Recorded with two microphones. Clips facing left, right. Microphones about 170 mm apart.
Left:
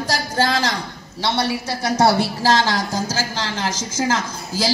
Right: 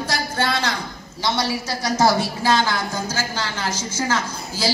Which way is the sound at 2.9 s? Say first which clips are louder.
Left 2 dB; 40° left (ahead or behind).